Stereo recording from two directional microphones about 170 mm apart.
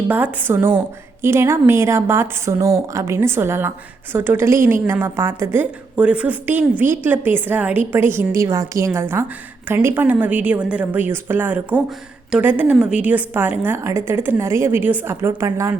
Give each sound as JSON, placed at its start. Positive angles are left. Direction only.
{"t": 0.1, "sound": "a woman's voice", "side_deg": -10}